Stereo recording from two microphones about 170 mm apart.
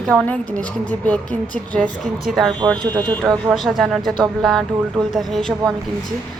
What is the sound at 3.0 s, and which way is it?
A woman's voice, 5° left (ahead or behind).